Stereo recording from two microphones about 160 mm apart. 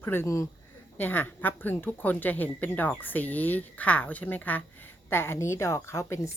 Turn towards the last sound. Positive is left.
turn(degrees=15)  # may be behind; listen again after turning